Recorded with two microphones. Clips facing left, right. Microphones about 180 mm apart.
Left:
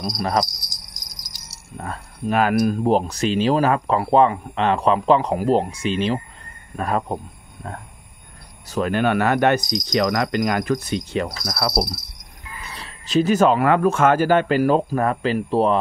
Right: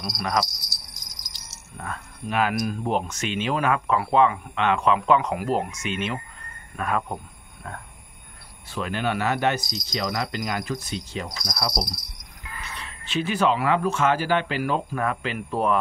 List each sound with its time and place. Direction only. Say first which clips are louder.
0.0 s speech: left 4 dB; 35° left (ahead or behind)
0.6 s jingle bell: left 1 dB; 15° left (ahead or behind)
1.8 s speech: left 5 dB; 35° left (ahead or behind)
8.6 s speech: left 7 dB; 45° left (ahead or behind)
9.6 s speech: left 9 dB; 15° left (ahead or behind)
9.9 s cricket: left 8 dB; 70° left (ahead or behind)
12.7 s speech: left 9 dB; 40° left (ahead or behind)